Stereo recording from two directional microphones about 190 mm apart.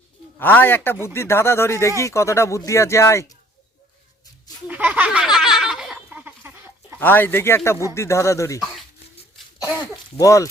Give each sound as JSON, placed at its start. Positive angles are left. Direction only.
{"t": 0.3, "sound": "a man's voice", "side_deg": 10}
{"t": 4.7, "sound": "a sound", "side_deg": -10}
{"t": 7.0, "sound": "a man's voice", "side_deg": 10}
{"t": 10.2, "sound": "a man's voice", "side_deg": 15}